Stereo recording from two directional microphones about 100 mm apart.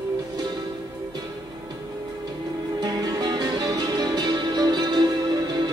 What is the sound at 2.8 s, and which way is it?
Music, 40° right (ahead or behind).